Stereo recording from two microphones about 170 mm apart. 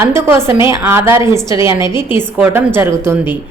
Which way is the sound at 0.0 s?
15° right (ahead or behind).